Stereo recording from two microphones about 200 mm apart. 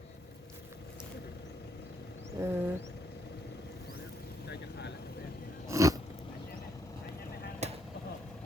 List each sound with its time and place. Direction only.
2.4 s vehicle: 15° right (ahead or behind)
4.4 s vehicle: 55° left (ahead or behind)
5.6 s a sound: 15° right (ahead or behind)
7.6 s vehicle: 35° right (ahead or behind)